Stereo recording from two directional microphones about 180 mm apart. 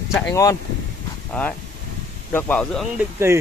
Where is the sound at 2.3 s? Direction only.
10° left (ahead or behind).